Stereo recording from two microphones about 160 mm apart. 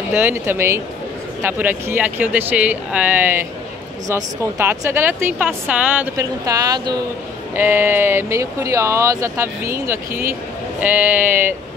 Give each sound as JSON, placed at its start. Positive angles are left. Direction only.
{"t": 0.1, "sound": "speech", "side_deg": -15}
{"t": 6.1, "sound": "speech", "side_deg": -20}
{"t": 7.5, "sound": "speech", "side_deg": -15}